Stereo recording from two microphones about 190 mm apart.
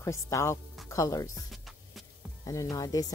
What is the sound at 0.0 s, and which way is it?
Speech, 15° left (ahead or behind).